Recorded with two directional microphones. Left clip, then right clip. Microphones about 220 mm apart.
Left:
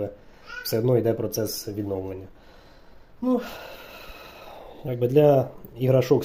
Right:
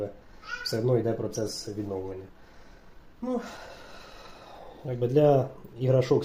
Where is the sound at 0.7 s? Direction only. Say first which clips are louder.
Left 5 dB; 35° left (ahead or behind).